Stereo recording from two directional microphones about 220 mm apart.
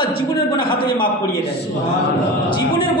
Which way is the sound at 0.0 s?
20° left (ahead or behind).